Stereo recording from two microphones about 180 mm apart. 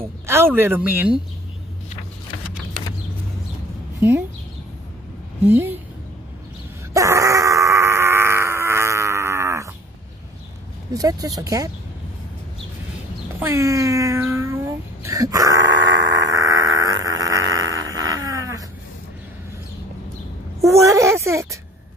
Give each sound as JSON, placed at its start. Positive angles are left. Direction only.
{"t": 0.3, "sound": "speech", "side_deg": -15}
{"t": 5.5, "sound": "speech", "side_deg": -10}
{"t": 6.9, "sound": "wail", "side_deg": -15}
{"t": 10.9, "sound": "speech", "side_deg": -20}
{"t": 13.4, "sound": "speech", "side_deg": -15}
{"t": 16.2, "sound": "a sound", "side_deg": -20}
{"t": 20.6, "sound": "a sound", "side_deg": -15}